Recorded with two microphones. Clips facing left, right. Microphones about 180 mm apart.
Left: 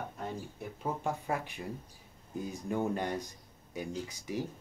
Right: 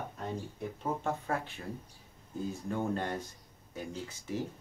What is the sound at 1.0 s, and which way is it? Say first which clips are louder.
Speech: even; 10° left (ahead or behind).